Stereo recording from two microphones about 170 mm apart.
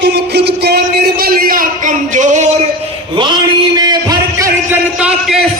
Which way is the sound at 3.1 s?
25° right (ahead or behind).